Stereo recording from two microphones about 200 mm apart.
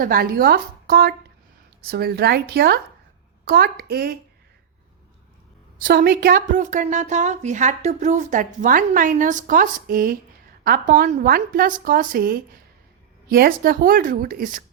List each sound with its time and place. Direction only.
0.0 s a woman's voice: 45° right (ahead or behind)
5.8 s a woman's voice: 50° right (ahead or behind)